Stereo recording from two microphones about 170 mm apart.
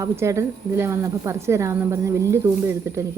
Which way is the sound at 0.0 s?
15° right (ahead or behind).